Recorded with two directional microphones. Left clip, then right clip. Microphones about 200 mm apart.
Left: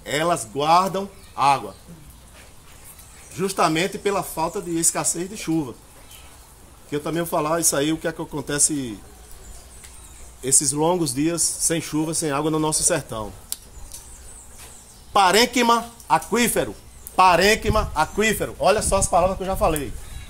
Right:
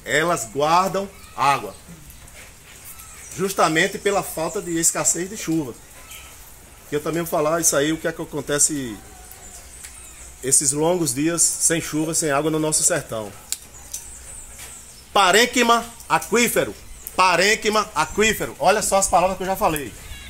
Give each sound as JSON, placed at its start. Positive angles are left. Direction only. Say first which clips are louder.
{"t": 0.0, "sound": "a man's voice", "louder": "right 2 dB", "side_deg": 35}
{"t": 3.3, "sound": "a man's voice", "louder": "right 2 dB", "side_deg": 30}
{"t": 6.9, "sound": "a man's voice", "louder": "right 1 dB", "side_deg": 35}
{"t": 10.4, "sound": "a man's voice", "louder": "right 1 dB", "side_deg": 35}
{"t": 15.1, "sound": "a man's voice", "louder": "right 1 dB", "side_deg": 40}